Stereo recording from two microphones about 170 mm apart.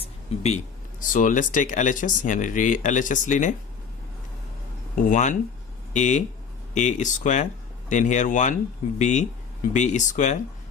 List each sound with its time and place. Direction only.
0.0 s speech: 40° left (ahead or behind)
4.9 s speech: 50° left (ahead or behind)